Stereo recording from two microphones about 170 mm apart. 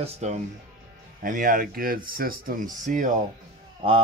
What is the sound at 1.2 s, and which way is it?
Speech, 50° right (ahead or behind).